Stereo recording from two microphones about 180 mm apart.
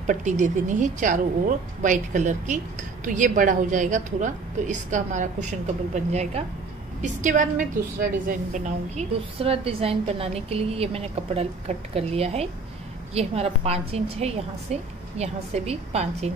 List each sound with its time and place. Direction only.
0.0 s a woman's voice: 40° right (ahead or behind)